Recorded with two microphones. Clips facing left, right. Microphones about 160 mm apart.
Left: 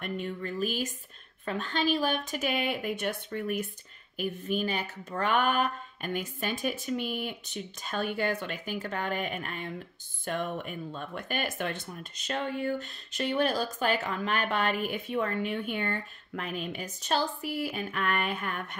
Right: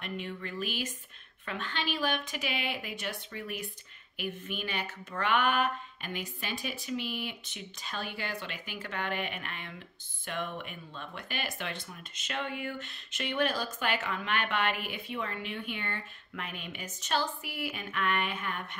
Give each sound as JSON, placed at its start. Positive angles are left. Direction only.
{"t": 0.0, "sound": "a woman's voice", "side_deg": 40}
{"t": 12.2, "sound": "a woman's voice", "side_deg": 35}